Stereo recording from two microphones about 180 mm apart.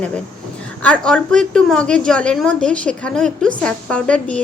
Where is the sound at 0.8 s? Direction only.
5° left (ahead or behind).